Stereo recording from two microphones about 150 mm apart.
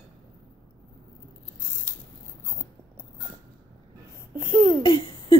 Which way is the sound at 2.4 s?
20° right (ahead or behind).